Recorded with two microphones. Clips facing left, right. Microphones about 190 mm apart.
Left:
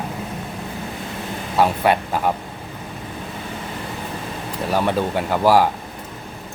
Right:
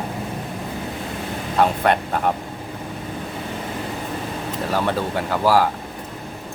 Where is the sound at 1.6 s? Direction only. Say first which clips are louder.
Left 1 dB; 5° left (ahead or behind).